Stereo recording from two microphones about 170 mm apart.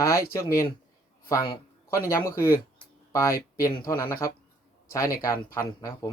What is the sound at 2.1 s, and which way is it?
Speech, 20° left (ahead or behind).